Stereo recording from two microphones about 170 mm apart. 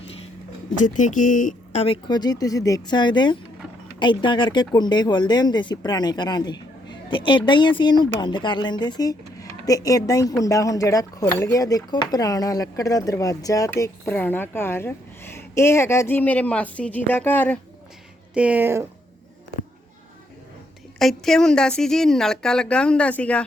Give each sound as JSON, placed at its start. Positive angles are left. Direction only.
{"t": 0.8, "sound": "speech", "side_deg": 50}
{"t": 1.8, "sound": "speech", "side_deg": 30}
{"t": 18.3, "sound": "speech", "side_deg": -10}
{"t": 21.0, "sound": "a woman's voice", "side_deg": 0}